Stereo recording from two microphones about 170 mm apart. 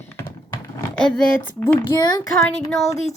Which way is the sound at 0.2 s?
15° left (ahead or behind).